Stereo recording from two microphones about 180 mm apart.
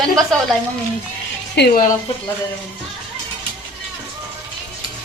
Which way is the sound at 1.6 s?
50° left (ahead or behind).